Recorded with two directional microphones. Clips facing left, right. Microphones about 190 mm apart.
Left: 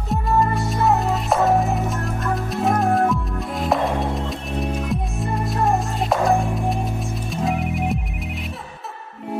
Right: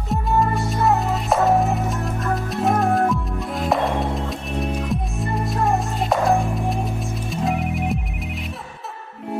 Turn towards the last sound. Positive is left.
turn(degrees=0)  # may be behind; listen again after turning